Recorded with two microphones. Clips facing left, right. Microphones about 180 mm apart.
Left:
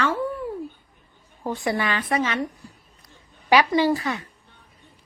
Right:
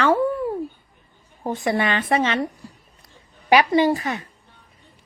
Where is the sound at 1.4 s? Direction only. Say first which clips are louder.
Right 3 dB; 20° right (ahead or behind).